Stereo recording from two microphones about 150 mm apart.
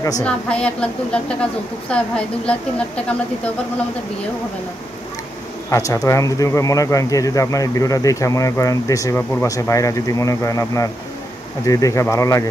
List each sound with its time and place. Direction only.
0.2 s a woman's voice: 10° left (ahead or behind)
5.7 s speech: 20° left (ahead or behind)